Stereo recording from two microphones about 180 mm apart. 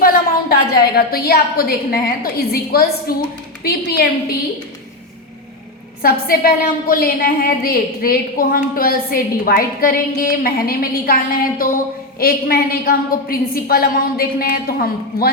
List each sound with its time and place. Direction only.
0.0 s a woman's voice: 60° left (ahead or behind)
6.0 s a woman's voice: 55° left (ahead or behind)